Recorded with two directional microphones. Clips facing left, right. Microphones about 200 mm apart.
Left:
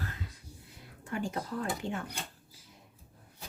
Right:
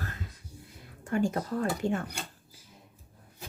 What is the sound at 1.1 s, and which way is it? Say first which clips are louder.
Speech: right 6 dB; 45° right (ahead or behind).